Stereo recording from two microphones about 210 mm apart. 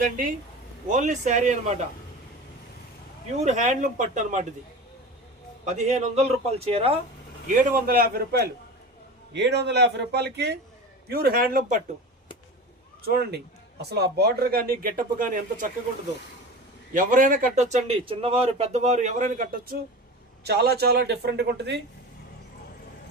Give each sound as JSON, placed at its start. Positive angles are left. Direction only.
{"t": 0.9, "sound": "a man's voice", "side_deg": -35}
{"t": 3.3, "sound": "a man's voice", "side_deg": -35}
{"t": 5.6, "sound": "a man's voice", "side_deg": -35}
{"t": 7.4, "sound": "speech", "side_deg": -40}
{"t": 13.1, "sound": "speech", "side_deg": -50}
{"t": 16.9, "sound": "a man's voice", "side_deg": -40}
{"t": 20.4, "sound": "speech", "side_deg": -50}